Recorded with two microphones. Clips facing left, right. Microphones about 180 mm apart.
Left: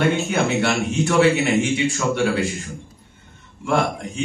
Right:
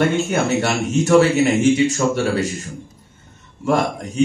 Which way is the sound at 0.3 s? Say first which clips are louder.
Right 1 dB; 45° right (ahead or behind).